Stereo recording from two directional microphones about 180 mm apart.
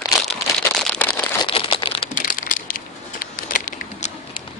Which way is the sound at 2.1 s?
50° left (ahead or behind).